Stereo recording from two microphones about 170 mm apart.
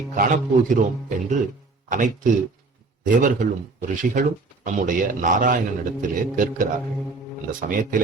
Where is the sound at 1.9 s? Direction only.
50° right (ahead or behind).